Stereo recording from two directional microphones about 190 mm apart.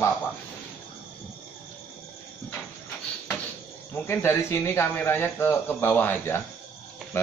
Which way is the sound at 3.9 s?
15° left (ahead or behind).